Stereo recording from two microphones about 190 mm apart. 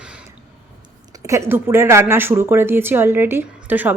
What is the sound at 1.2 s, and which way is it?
Speech, 15° right (ahead or behind).